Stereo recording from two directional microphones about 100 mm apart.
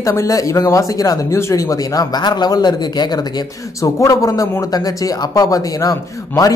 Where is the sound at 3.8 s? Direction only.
35° left (ahead or behind).